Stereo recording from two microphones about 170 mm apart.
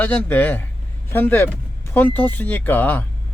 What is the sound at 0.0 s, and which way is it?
A man's voice, 10° left (ahead or behind).